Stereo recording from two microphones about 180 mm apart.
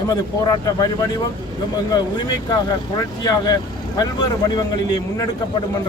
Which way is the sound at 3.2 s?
20° left (ahead or behind).